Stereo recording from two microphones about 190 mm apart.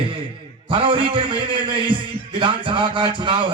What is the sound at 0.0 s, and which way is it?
Music, 25° right (ahead or behind).